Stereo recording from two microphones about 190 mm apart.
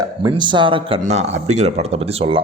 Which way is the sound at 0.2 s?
25° right (ahead or behind).